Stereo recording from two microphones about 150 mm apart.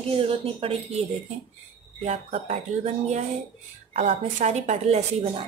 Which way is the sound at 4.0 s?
50° right (ahead or behind).